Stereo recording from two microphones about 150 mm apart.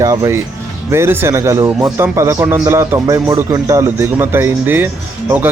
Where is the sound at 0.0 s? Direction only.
20° right (ahead or behind).